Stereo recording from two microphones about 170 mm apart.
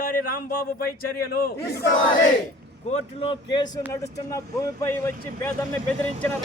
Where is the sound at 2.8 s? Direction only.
30° left (ahead or behind).